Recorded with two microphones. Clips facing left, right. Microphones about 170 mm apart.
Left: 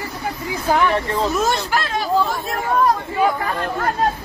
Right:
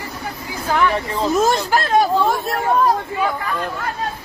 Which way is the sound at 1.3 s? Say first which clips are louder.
Right 3 dB; 45° right (ahead or behind).